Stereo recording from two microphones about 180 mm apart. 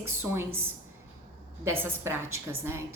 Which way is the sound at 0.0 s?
15° right (ahead or behind).